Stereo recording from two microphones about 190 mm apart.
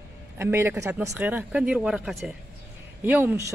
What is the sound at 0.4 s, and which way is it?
Speech, 10° right (ahead or behind).